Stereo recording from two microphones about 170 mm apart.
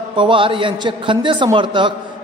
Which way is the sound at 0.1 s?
30° right (ahead or behind).